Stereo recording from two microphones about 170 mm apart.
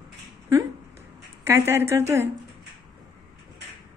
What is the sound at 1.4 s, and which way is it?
Speech, 15° right (ahead or behind).